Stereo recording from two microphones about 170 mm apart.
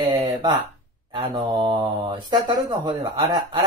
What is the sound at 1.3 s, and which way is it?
Speech, 25° right (ahead or behind).